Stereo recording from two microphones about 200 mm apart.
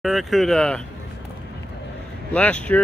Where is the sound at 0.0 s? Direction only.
Centre (ahead or behind).